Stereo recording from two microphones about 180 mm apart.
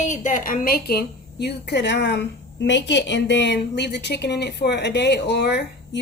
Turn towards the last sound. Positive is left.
turn(degrees=65)  # may be behind; listen again after turning